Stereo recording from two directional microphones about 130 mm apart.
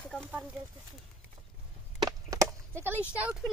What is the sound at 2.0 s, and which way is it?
Chop, 25° right (ahead or behind).